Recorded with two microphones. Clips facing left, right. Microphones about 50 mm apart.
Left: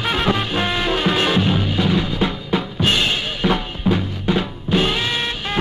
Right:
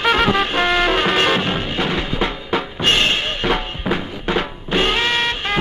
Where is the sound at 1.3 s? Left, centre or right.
Right.